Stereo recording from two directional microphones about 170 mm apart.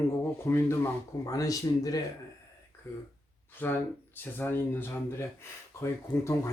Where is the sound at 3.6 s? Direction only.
10° left (ahead or behind).